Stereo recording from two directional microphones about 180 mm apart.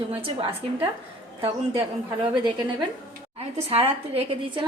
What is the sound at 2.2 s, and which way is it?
Speech, 25° right (ahead or behind).